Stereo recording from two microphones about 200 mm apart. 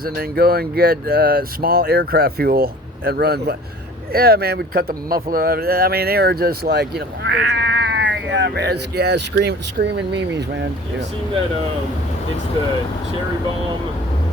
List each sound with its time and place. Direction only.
0.0 s speech: 50° right (ahead or behind)